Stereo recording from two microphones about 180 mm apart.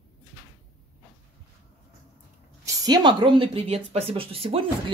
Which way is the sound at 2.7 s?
20° right (ahead or behind).